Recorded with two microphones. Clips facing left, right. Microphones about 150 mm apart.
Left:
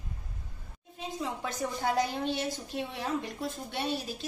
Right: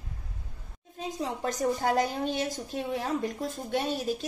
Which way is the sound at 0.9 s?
40° right (ahead or behind).